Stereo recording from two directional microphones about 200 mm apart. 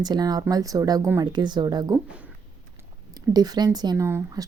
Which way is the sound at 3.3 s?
20° right (ahead or behind).